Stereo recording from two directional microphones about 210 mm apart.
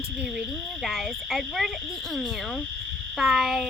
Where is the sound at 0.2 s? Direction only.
5° right (ahead or behind).